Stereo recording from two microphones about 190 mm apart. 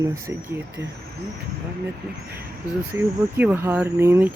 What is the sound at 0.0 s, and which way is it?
Speech, 15° right (ahead or behind).